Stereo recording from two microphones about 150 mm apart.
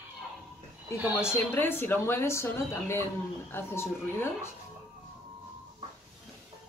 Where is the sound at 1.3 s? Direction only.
15° left (ahead or behind).